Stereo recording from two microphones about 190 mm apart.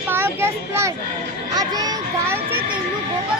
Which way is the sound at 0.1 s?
10° right (ahead or behind).